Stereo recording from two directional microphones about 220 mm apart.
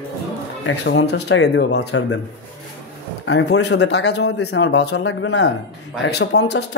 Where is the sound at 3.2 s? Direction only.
50° left (ahead or behind).